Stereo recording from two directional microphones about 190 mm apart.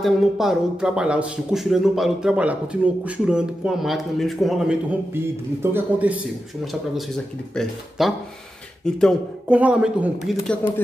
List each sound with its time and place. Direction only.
0.0 s a man's voice: centre (ahead or behind)